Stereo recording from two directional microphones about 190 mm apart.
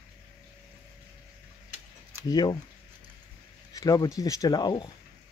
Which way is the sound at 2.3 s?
25° left (ahead or behind).